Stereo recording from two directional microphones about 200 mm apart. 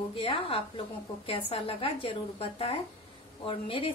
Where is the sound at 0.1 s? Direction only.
25° left (ahead or behind).